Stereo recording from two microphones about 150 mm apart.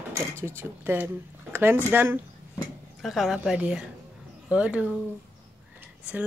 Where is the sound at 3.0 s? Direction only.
Centre (ahead or behind).